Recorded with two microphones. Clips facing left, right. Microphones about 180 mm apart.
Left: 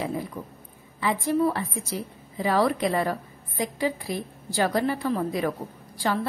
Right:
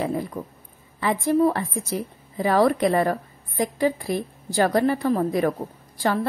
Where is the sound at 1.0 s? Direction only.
50° right (ahead or behind).